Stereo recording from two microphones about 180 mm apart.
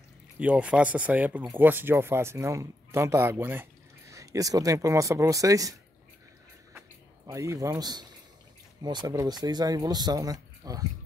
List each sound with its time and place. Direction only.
0.4 s speech: 5° right (ahead or behind)
7.2 s speech: 15° right (ahead or behind)